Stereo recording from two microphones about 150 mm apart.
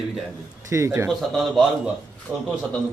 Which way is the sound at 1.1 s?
Centre (ahead or behind).